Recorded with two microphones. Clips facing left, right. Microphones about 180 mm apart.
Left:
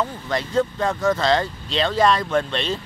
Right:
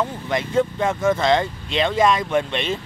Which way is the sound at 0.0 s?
15° right (ahead or behind).